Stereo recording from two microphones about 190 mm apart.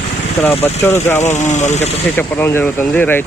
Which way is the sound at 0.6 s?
15° left (ahead or behind).